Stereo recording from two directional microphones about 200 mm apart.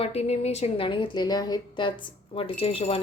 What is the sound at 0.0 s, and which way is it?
Speech, 30° left (ahead or behind).